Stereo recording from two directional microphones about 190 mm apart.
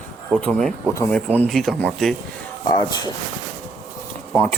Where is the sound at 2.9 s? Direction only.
20° left (ahead or behind).